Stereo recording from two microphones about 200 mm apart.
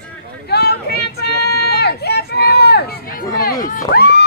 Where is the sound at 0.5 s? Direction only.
55° left (ahead or behind).